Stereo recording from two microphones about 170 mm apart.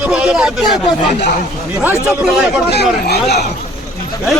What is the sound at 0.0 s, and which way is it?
Speech, 5° right (ahead or behind).